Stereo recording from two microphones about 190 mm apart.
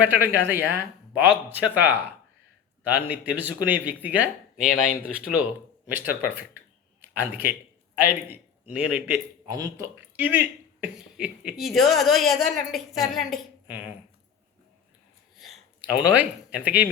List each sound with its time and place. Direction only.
0.0 s a man's voice: 10° right (ahead or behind)
9.5 s speech: 20° right (ahead or behind)
15.4 s speech: 5° right (ahead or behind)